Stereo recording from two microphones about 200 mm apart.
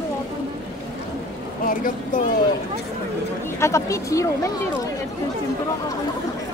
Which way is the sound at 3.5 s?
15° left (ahead or behind).